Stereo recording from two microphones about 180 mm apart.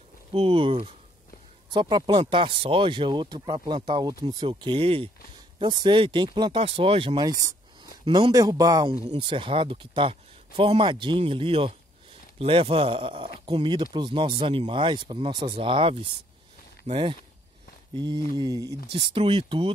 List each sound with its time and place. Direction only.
0.3 s speech: 30° right (ahead or behind)
18.9 s speech: 30° right (ahead or behind)